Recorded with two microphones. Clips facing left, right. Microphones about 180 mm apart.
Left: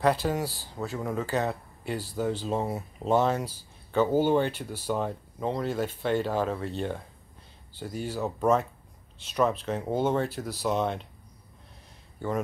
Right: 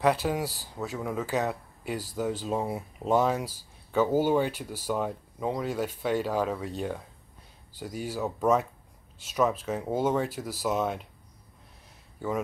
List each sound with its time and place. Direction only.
0.0 s speech: 5° right (ahead or behind)